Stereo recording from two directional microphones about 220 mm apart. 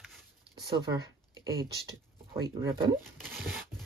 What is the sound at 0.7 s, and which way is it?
Speech, 20° right (ahead or behind).